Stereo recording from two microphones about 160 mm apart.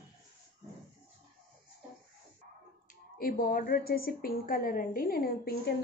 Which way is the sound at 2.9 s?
60° left (ahead or behind).